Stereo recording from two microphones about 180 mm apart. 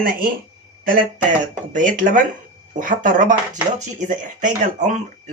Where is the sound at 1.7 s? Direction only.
45° right (ahead or behind).